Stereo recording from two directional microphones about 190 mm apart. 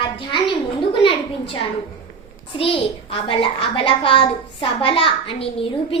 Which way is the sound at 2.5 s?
30° left (ahead or behind).